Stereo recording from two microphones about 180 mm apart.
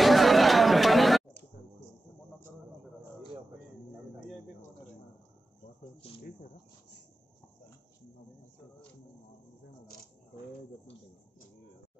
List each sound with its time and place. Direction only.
0.0 s chatter: centre (ahead or behind)
6.0 s cricket: 35° left (ahead or behind)